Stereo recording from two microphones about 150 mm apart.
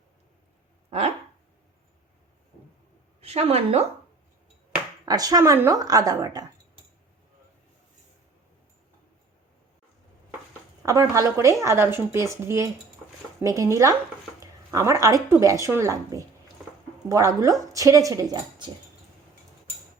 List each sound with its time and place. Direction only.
0.9 s speech: 40° right (ahead or behind)
3.2 s a woman's voice: 45° right (ahead or behind)
5.0 s speech: 25° right (ahead or behind)
11.1 s speech: 20° right (ahead or behind)